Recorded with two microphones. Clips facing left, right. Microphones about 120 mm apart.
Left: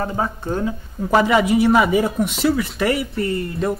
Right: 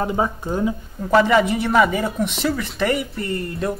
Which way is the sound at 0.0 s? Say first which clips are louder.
Right 1 dB; 15° right (ahead or behind).